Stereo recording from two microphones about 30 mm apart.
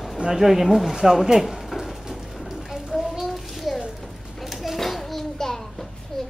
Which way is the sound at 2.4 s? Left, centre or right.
Centre.